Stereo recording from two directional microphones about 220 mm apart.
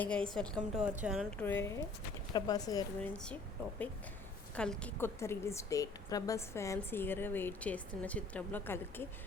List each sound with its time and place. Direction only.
0.0 s a woman's voice: 5° left (ahead or behind)
1.4 s a woman's voice: 10° left (ahead or behind)
4.5 s a woman's voice: 5° left (ahead or behind)